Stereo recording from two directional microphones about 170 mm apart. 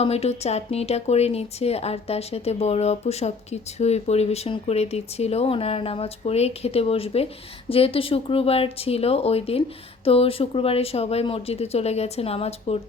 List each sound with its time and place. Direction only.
0.0 s a woman's voice: 35° left (ahead or behind)